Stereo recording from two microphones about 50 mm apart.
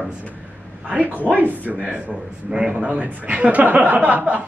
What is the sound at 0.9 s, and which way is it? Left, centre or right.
A man's voice, right.